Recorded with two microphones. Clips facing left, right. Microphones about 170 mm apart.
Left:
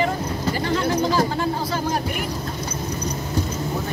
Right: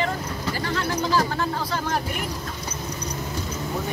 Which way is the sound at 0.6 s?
15° left (ahead or behind).